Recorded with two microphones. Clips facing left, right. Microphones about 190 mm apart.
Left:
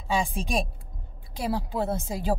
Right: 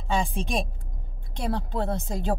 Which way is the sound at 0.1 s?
Centre (ahead or behind).